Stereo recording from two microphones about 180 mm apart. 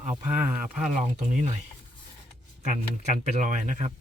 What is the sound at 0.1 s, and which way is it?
Speech, 10° right (ahead or behind).